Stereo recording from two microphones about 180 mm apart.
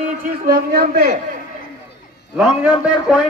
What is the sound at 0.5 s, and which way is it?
Speech, 55° right (ahead or behind).